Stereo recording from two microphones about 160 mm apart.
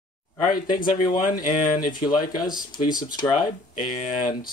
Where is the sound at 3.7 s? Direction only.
50° left (ahead or behind).